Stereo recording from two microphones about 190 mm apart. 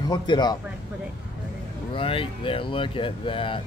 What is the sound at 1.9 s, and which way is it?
Speech, 30° left (ahead or behind).